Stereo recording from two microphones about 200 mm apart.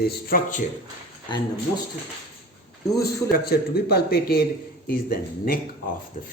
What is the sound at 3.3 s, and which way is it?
Speech, 50° left (ahead or behind).